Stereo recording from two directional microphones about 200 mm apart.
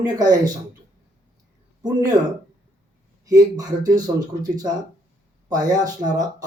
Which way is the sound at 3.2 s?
20° right (ahead or behind).